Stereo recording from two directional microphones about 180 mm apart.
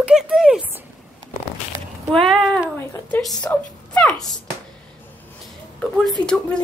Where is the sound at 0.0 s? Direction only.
5° right (ahead or behind).